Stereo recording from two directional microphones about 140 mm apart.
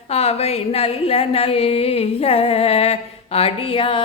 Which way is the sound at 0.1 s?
45° left (ahead or behind).